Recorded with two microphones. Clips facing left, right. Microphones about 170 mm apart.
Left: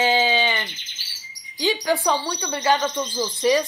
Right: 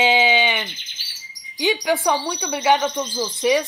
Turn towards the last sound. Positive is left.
turn(degrees=0)  # may be behind; listen again after turning